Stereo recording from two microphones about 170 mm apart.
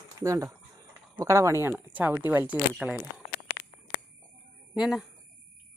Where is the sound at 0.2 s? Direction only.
20° right (ahead or behind).